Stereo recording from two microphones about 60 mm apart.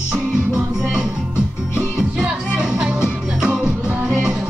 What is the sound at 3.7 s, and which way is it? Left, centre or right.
Music, right.